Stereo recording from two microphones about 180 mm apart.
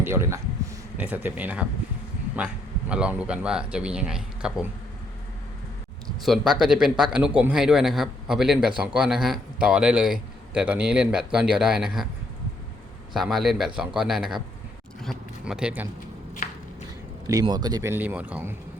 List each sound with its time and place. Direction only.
0.0 s speech: 15° right (ahead or behind)
2.9 s speech: 5° right (ahead or behind)
6.2 s speech: centre (ahead or behind)
13.1 s speech: centre (ahead or behind)
16.4 s a sound: 50° left (ahead or behind)
17.4 s speech: 20° right (ahead or behind)